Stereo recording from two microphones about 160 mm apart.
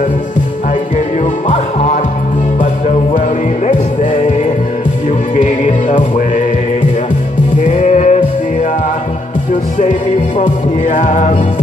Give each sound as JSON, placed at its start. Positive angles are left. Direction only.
{"t": 2.6, "sound": "music", "side_deg": 40}
{"t": 5.4, "sound": "music", "side_deg": 50}
{"t": 7.6, "sound": "music", "side_deg": 45}
{"t": 10.4, "sound": "music", "side_deg": 50}